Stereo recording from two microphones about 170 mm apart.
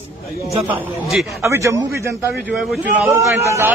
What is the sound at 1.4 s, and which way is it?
Speech, 15° right (ahead or behind).